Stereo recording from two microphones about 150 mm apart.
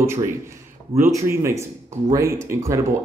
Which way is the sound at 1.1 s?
20° right (ahead or behind).